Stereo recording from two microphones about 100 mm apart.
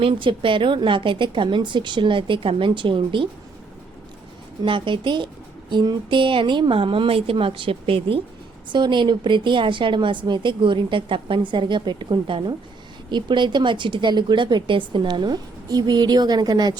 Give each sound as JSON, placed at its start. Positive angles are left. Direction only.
{"t": 0.0, "sound": "a woman's voice", "side_deg": -65}
{"t": 4.6, "sound": "a woman's voice", "side_deg": -55}
{"t": 8.7, "sound": "a woman's voice", "side_deg": -50}